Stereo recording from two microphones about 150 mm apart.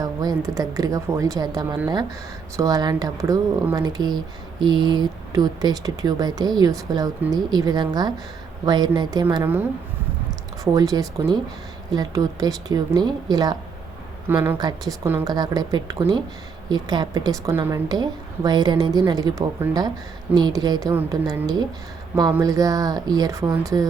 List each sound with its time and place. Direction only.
0.0 s a woman's voice: 25° right (ahead or behind)
9.3 s a woman's voice: 15° right (ahead or behind)
14.3 s a woman's voice: 15° right (ahead or behind)
14.6 s a woman's voice: 25° right (ahead or behind)